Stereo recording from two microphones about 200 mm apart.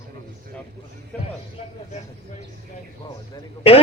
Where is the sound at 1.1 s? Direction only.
5° left (ahead or behind).